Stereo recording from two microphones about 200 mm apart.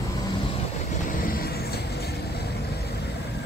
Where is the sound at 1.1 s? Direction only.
45° left (ahead or behind).